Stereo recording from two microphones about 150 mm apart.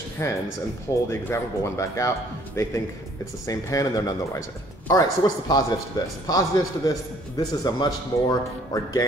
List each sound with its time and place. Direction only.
0.2 s speech: 20° left (ahead or behind)